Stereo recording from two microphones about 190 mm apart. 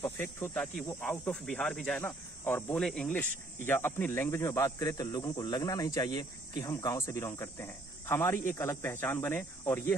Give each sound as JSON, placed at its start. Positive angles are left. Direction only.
{"t": 0.0, "sound": "speech", "side_deg": 10}